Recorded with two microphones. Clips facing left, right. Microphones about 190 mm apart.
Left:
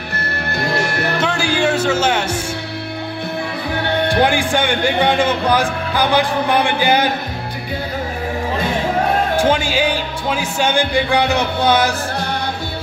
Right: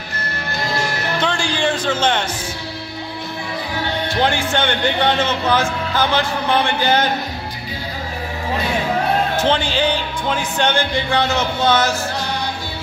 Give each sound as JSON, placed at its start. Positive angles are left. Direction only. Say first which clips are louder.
{"t": 0.6, "sound": "music", "louder": "left 3 dB", "side_deg": 60}
{"t": 1.2, "sound": "speech", "louder": "left 2 dB", "side_deg": 5}
{"t": 4.2, "sound": "speech", "louder": "even", "side_deg": 15}
{"t": 9.4, "sound": "speech", "louder": "left 2 dB", "side_deg": 10}